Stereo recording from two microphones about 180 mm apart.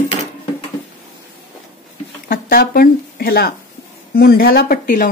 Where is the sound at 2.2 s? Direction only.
55° left (ahead or behind).